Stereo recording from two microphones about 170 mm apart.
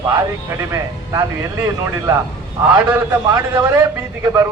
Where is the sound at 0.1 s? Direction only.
20° right (ahead or behind).